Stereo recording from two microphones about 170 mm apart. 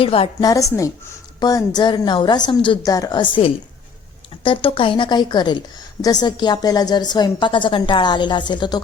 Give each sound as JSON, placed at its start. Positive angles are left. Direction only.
{"t": 0.0, "sound": "a woman's voice", "side_deg": 30}
{"t": 0.4, "sound": "a woman's voice", "side_deg": 20}